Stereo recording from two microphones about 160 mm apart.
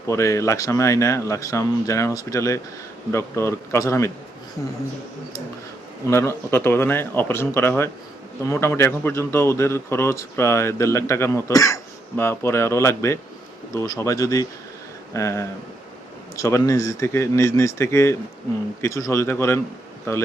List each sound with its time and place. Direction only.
0.1 s speech: 20° left (ahead or behind)
6.1 s speech: 15° left (ahead or behind)